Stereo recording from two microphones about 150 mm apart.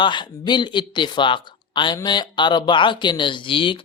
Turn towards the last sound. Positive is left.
turn(degrees=35)  # may be behind; listen again after turning